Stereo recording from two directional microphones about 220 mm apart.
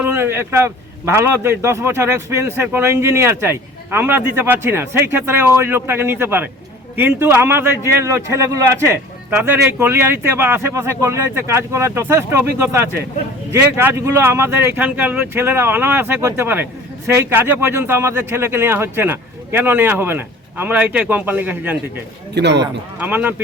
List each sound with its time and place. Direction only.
0.0 s speech: 10° right (ahead or behind)
22.4 s speech: 50° right (ahead or behind)
23.0 s speech: 10° right (ahead or behind)